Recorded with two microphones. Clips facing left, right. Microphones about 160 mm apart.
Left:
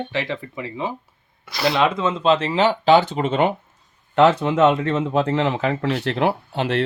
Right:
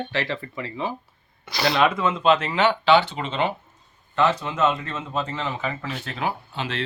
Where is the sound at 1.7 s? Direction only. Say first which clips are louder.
Even; 20° left (ahead or behind); by 3.5 s 50° left (ahead or behind).